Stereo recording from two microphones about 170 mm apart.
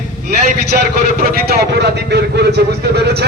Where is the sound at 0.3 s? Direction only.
70° right (ahead or behind).